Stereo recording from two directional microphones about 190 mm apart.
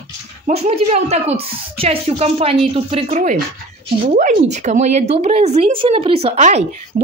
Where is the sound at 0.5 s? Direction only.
35° right (ahead or behind).